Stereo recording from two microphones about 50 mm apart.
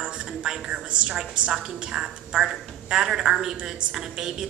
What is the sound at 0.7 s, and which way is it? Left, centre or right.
A woman's voice, right.